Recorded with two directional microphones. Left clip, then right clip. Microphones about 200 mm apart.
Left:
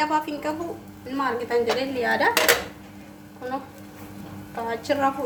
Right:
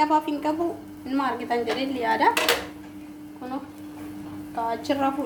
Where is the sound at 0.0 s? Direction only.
15° right (ahead or behind).